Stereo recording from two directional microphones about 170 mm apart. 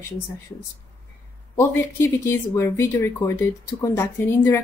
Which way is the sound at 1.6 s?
15° left (ahead or behind).